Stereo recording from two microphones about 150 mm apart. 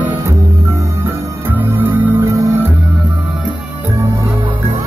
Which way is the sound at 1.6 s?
10° right (ahead or behind).